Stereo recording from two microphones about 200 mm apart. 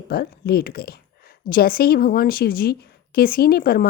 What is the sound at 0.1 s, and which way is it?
A woman's voice, 50° left (ahead or behind).